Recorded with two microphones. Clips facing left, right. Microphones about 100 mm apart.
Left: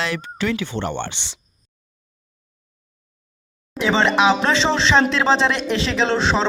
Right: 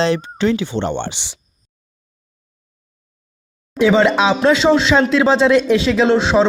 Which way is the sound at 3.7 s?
15° right (ahead or behind).